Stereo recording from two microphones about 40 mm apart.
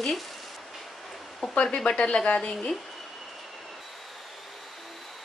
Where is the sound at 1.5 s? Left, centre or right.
Left.